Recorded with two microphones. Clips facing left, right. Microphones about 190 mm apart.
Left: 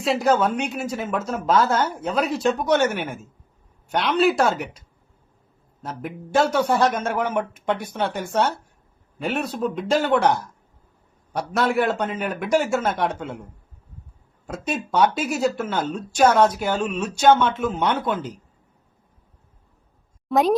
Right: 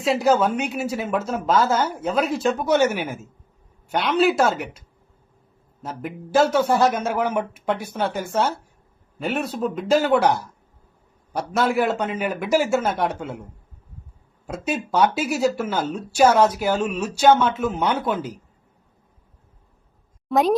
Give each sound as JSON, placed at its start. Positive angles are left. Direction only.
{"t": 0.0, "sound": "speech", "side_deg": 0}
{"t": 14.4, "sound": "speech", "side_deg": -5}
{"t": 20.3, "sound": "speech", "side_deg": 0}